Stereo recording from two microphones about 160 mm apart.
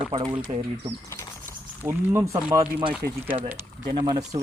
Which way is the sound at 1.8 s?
15° right (ahead or behind).